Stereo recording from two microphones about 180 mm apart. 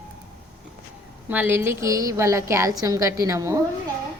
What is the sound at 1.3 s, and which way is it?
A woman's voice, 10° right (ahead or behind).